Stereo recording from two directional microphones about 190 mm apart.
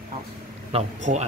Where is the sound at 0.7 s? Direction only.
35° right (ahead or behind).